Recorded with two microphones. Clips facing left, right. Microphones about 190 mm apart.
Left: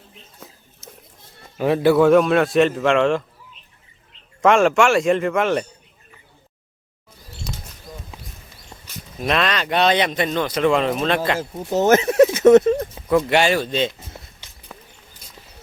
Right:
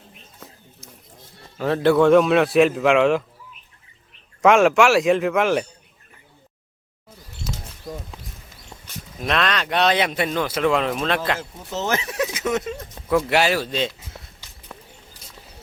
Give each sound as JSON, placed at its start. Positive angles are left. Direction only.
{"t": 1.5, "sound": "speech", "side_deg": 15}
{"t": 4.4, "sound": "speech", "side_deg": 0}
{"t": 7.5, "sound": "bird", "side_deg": -5}
{"t": 7.9, "sound": "a sound", "side_deg": -70}
{"t": 9.2, "sound": "speech", "side_deg": 0}
{"t": 11.3, "sound": "speech", "side_deg": 40}
{"t": 12.4, "sound": "a sound", "side_deg": 50}
{"t": 12.9, "sound": "speech", "side_deg": 0}
{"t": 14.7, "sound": "a sound", "side_deg": 5}